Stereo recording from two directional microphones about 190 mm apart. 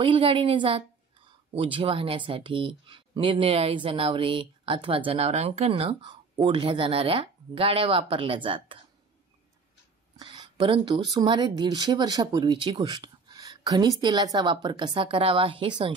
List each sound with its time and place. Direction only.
0.0 s speech: 25° right (ahead or behind)
10.1 s speech: 25° right (ahead or behind)